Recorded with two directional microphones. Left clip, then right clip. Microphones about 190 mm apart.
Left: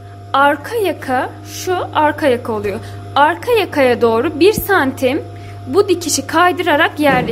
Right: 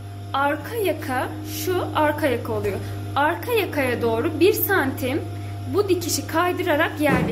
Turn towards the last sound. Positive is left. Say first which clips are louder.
# left 8 dB
turn(degrees=50)  # may be behind; listen again after turning